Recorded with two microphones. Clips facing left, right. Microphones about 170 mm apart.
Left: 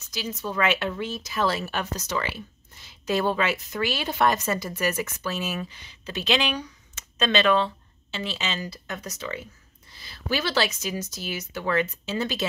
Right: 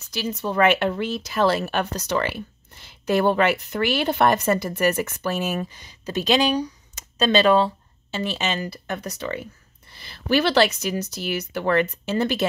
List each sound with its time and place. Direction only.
0.4 s speech: 60° right (ahead or behind)
5.6 s speech: 40° right (ahead or behind); by 12.4 s 55° right (ahead or behind)